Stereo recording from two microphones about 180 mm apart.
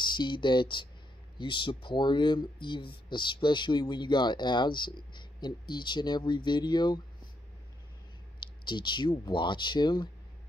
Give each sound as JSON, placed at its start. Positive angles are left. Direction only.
{"t": 0.0, "sound": "speech", "side_deg": 25}
{"t": 8.4, "sound": "speech", "side_deg": 25}